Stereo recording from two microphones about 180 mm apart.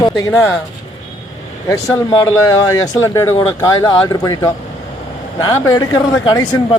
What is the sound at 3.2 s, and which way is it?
Speech, 15° left (ahead or behind).